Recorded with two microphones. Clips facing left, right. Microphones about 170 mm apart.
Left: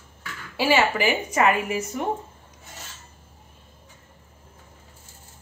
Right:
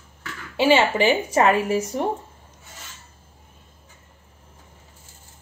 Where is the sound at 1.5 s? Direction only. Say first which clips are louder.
Right 5 dB; 35° right (ahead or behind).